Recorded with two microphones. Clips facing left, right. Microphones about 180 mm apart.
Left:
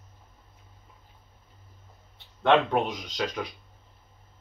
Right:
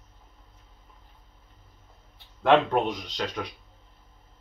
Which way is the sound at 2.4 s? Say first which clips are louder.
Right 1 dB; centre (ahead or behind).